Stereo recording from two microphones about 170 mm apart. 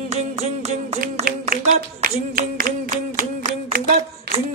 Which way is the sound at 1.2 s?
60° right (ahead or behind).